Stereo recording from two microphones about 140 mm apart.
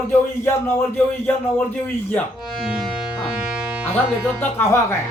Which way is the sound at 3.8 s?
5° right (ahead or behind).